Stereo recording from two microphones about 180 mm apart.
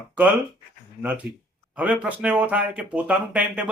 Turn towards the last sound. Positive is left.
turn(degrees=-5)  # may be behind; listen again after turning